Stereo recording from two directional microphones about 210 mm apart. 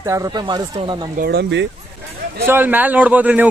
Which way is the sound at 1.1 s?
50° right (ahead or behind).